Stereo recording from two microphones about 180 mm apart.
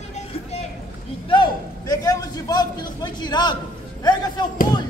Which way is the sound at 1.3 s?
25° left (ahead or behind).